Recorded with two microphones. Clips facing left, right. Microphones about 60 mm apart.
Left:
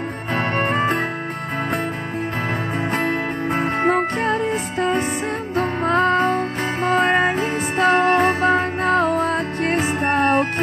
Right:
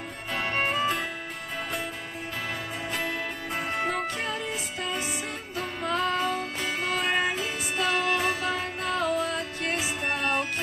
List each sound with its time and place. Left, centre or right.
0.6 s music: left
3.0 s music: left